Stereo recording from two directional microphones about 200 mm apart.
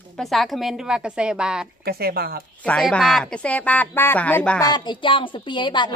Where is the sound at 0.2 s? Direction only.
Centre (ahead or behind).